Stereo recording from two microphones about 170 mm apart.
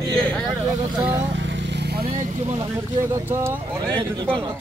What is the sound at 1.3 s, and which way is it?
Vehicle, 90° right.